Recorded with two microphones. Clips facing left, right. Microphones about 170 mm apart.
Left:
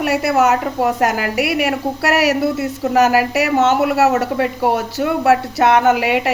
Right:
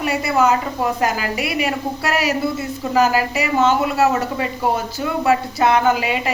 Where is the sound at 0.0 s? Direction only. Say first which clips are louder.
Left 3 dB; 75° left (ahead or behind).